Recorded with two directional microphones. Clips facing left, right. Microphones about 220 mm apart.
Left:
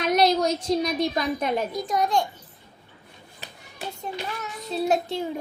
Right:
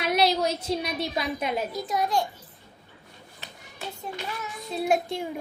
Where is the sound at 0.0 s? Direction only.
5° right (ahead or behind).